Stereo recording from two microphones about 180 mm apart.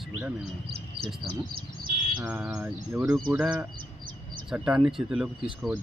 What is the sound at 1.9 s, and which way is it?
Bird, 35° left (ahead or behind).